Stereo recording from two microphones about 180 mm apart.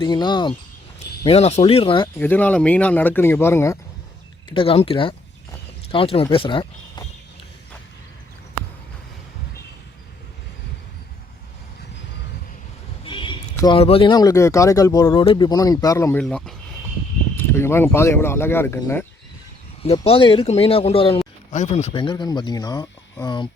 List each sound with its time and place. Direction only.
0.0 s a man's voice: 25° left (ahead or behind)
1.2 s speech: 35° left (ahead or behind)
2.1 s speech: 10° left (ahead or behind)
4.5 s a man's voice: 30° left (ahead or behind)
13.1 s a man's voice: 30° left (ahead or behind)
16.2 s speech: centre (ahead or behind)
17.3 s speech: 15° left (ahead or behind)
19.8 s a man's voice: 35° left (ahead or behind)